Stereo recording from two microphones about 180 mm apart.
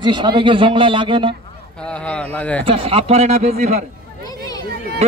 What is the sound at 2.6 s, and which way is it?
Speech, 30° right (ahead or behind).